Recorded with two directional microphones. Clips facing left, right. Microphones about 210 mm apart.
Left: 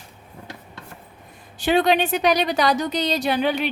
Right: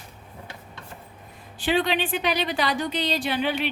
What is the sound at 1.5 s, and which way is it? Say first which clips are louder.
A woman's voice: left 5 dB; 45° left (ahead or behind).